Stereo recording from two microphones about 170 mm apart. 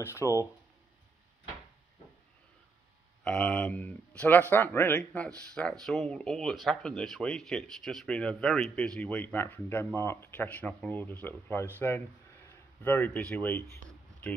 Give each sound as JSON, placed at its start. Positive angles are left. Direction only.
{"t": 0.0, "sound": "speech", "side_deg": 15}
{"t": 3.3, "sound": "a man's voice", "side_deg": 5}